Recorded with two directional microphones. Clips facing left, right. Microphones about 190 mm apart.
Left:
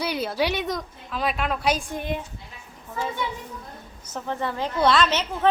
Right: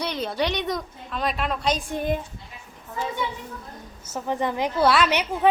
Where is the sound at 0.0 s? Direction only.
5° left (ahead or behind).